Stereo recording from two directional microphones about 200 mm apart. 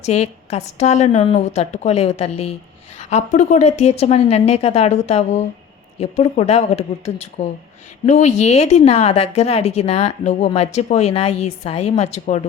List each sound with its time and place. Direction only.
0.0 s a woman's voice: 30° left (ahead or behind)